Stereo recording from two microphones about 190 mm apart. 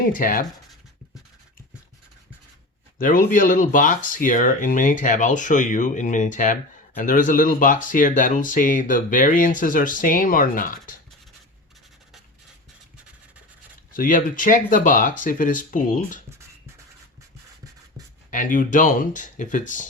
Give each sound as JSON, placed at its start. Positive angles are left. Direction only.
{"t": 0.1, "sound": "speech", "side_deg": 45}
{"t": 3.0, "sound": "speech", "side_deg": 45}
{"t": 13.9, "sound": "speech", "side_deg": 45}
{"t": 18.3, "sound": "speech", "side_deg": 45}